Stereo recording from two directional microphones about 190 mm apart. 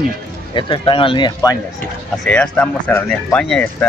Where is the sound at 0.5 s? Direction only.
25° left (ahead or behind).